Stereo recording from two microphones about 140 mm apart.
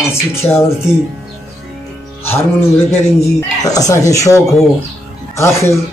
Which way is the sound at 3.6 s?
25° left (ahead or behind).